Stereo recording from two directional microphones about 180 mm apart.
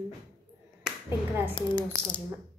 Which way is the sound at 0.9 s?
10° right (ahead or behind).